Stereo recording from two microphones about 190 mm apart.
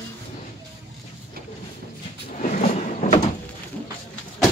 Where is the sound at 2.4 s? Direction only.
40° left (ahead or behind).